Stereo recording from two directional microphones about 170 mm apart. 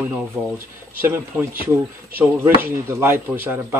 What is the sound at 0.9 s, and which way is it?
Speech, 10° right (ahead or behind).